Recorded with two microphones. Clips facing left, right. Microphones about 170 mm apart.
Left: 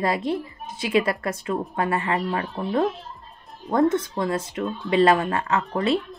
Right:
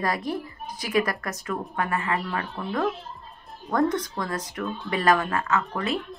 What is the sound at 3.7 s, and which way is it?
A woman's voice, 25° left (ahead or behind).